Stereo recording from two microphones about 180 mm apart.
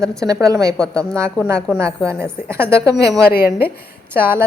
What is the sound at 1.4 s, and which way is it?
A woman's voice, 15° right (ahead or behind).